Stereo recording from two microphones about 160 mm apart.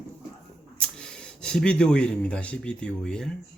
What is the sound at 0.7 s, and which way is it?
Speech, 5° left (ahead or behind).